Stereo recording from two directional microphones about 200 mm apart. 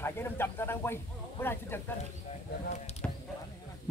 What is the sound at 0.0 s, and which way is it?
Speech, 10° left (ahead or behind).